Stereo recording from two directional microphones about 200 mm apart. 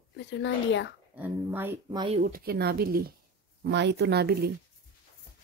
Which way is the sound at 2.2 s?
45° right (ahead or behind).